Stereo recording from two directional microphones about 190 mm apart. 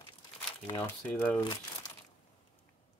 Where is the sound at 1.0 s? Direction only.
10° left (ahead or behind).